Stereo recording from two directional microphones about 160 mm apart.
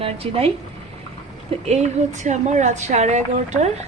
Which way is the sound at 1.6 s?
45° right (ahead or behind).